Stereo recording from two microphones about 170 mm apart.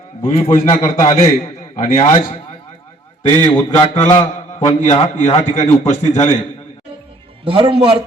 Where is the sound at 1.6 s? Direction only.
50° left (ahead or behind).